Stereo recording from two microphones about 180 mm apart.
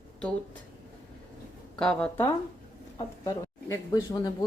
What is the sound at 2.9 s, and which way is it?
Speech, 20° left (ahead or behind).